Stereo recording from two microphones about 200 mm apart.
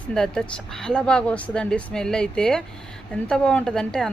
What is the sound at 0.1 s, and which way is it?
Speech, 5° left (ahead or behind).